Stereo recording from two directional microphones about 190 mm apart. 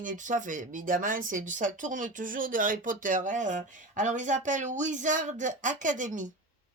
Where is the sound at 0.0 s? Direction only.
40° right (ahead or behind).